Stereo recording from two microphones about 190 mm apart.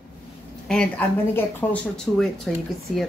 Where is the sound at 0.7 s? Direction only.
5° left (ahead or behind).